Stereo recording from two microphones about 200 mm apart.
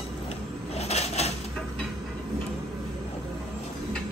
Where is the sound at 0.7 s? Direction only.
30° left (ahead or behind).